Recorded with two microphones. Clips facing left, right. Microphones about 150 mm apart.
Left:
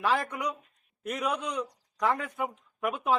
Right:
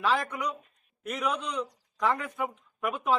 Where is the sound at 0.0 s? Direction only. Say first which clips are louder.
Even; 10° left (ahead or behind).